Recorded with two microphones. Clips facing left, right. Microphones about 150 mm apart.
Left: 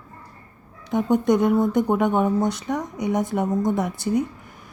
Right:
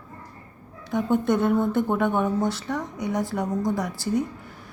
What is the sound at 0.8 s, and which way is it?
A woman's voice, 20° left (ahead or behind).